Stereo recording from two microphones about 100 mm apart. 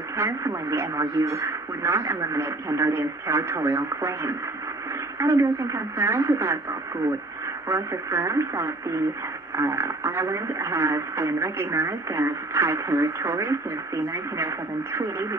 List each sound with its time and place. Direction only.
0.2 s speech: 30° right (ahead or behind)
7.6 s speech: 30° right (ahead or behind)